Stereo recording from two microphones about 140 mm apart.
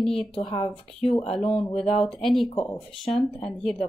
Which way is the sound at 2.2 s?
Centre (ahead or behind).